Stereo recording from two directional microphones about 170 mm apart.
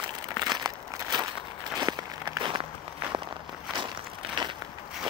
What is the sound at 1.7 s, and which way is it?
Walk, 25° right (ahead or behind).